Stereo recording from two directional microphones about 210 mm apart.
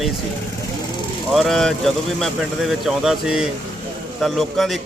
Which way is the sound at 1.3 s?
Centre (ahead or behind).